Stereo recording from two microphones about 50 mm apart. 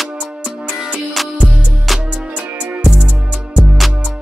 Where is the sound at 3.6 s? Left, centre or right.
Centre.